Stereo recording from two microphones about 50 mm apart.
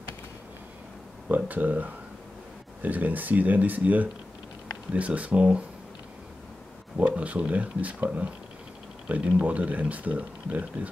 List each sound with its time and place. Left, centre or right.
1.3 s speech: right
7.1 s speech: right